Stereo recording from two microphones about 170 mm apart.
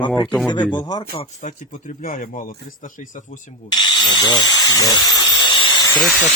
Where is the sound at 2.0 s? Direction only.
55° left (ahead or behind).